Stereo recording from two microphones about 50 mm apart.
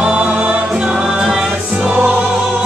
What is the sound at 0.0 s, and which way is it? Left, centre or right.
Music, right.